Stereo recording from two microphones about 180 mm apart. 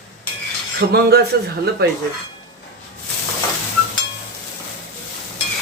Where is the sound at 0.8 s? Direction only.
60° right (ahead or behind).